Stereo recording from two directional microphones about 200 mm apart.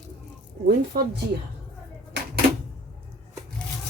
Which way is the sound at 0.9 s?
50° right (ahead or behind).